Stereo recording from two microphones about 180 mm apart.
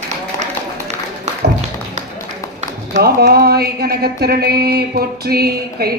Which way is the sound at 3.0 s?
60° right (ahead or behind).